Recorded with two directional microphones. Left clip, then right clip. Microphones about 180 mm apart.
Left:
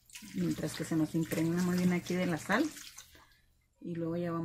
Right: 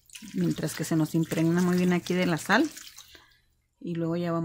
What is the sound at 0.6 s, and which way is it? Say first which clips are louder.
Speech: right 4 dB; 60° right (ahead or behind).